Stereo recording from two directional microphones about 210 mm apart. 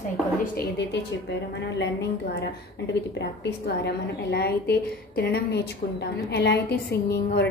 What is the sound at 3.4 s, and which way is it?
A woman's voice, 50° left (ahead or behind).